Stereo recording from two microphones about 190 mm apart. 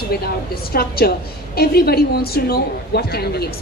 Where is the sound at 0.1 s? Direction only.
55° left (ahead or behind).